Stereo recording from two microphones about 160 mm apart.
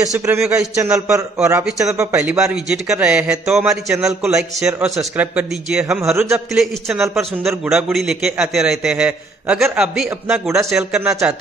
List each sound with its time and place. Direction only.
0.3 s a man's voice: 15° right (ahead or behind)
1.6 s a man's voice: 5° right (ahead or behind)
2.0 s a man's voice: 15° right (ahead or behind)
2.3 s a man's voice: 5° right (ahead or behind)